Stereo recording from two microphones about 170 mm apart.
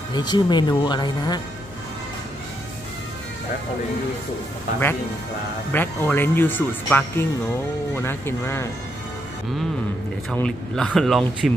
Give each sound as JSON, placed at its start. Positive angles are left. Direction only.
{"t": 0.1, "sound": "speech", "side_deg": 25}
{"t": 5.7, "sound": "speech", "side_deg": 10}
{"t": 10.3, "sound": "speech", "side_deg": 5}